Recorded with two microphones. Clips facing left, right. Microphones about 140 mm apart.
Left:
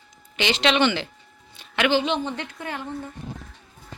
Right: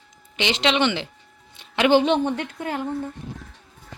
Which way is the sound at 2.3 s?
15° right (ahead or behind).